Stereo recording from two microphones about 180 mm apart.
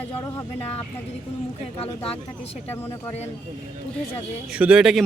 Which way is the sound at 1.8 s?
35° left (ahead or behind).